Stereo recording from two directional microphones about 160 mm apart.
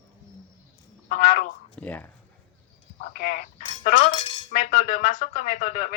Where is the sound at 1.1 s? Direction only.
50° left (ahead or behind).